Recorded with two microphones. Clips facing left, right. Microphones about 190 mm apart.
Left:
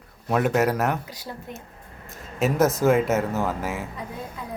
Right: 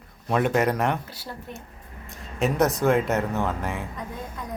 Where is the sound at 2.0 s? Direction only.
Centre (ahead or behind).